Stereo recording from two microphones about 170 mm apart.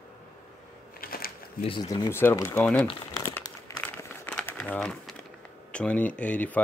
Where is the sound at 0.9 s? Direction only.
60° left (ahead or behind).